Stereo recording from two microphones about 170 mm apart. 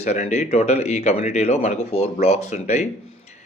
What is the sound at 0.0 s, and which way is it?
Speech, 45° left (ahead or behind).